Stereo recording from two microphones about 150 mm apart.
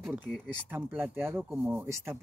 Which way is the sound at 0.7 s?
10° right (ahead or behind).